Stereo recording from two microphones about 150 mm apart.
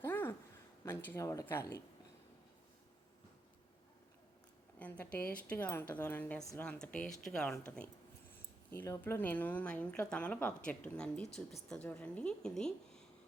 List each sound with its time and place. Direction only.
0.0 s a sound: 15° left (ahead or behind)
0.9 s speech: 15° left (ahead or behind)
4.8 s a woman's voice: 10° left (ahead or behind)
8.7 s a woman's voice: 15° left (ahead or behind)